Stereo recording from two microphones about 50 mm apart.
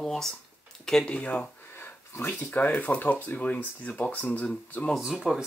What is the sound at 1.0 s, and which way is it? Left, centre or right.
Speech, left.